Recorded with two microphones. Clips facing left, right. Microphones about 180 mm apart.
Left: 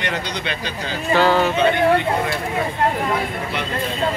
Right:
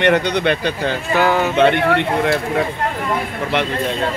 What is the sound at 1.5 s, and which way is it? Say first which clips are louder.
Speech: right 2 dB; 70° right (ahead or behind).